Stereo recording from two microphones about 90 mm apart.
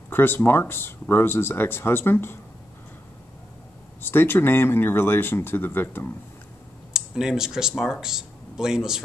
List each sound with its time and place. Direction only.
0.1 s speech: 25° left (ahead or behind)
4.0 s speech: 25° left (ahead or behind)
6.9 s speech: 5° right (ahead or behind)